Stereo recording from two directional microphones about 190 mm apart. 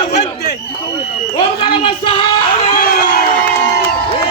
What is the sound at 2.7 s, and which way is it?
Crowd, 50° left (ahead or behind).